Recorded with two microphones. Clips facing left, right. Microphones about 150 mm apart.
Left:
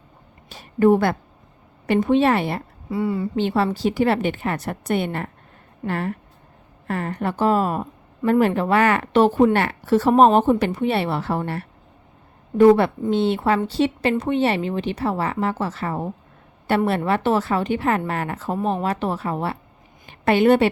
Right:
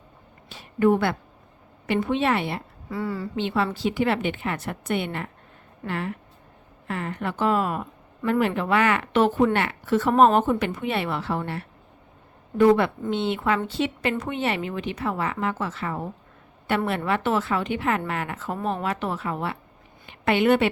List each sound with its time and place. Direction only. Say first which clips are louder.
0.4 s a woman's voice: left 4 dB; 40° left (ahead or behind)
2.9 s speech: left 6 dB; 20° left (ahead or behind)
3.3 s a woman's voice: left 2 dB; 40° left (ahead or behind)